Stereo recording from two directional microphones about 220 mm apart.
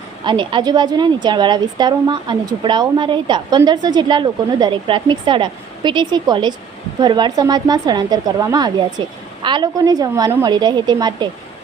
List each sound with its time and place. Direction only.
0.3 s a woman's voice: 20° right (ahead or behind)